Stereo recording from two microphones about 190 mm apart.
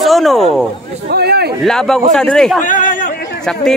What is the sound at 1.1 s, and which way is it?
Speech, 60° right (ahead or behind).